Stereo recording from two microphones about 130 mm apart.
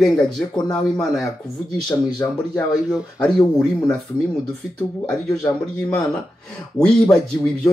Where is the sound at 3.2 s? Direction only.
5° left (ahead or behind).